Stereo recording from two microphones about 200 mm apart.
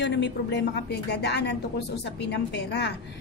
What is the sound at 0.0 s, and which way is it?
A woman's voice, 60° left (ahead or behind).